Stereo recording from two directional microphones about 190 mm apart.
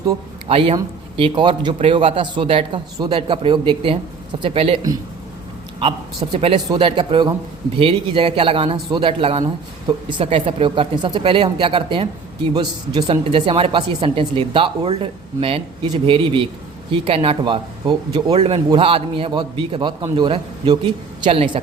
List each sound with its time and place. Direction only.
0.4 s speech: 30° right (ahead or behind)
6.3 s speech: 30° right (ahead or behind)